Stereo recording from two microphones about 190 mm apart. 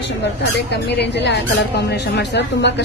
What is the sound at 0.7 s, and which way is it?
A woman's voice, 65° left (ahead or behind).